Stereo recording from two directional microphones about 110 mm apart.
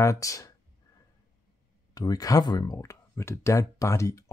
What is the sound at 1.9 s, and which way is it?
Speech, 35° left (ahead or behind).